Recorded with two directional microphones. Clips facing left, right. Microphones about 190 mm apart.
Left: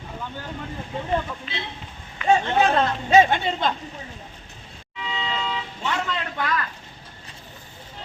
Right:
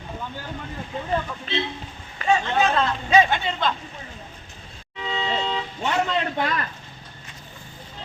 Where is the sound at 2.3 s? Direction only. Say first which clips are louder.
Left 2 dB; 35° left (ahead or behind).